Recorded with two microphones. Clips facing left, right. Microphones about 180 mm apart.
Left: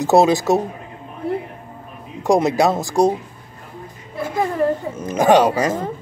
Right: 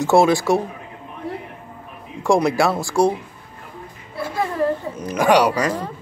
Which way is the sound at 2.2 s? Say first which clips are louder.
Left 2 dB; 20° left (ahead or behind).